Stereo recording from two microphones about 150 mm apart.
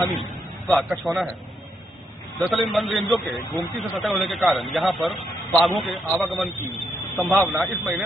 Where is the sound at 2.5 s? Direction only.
Centre (ahead or behind).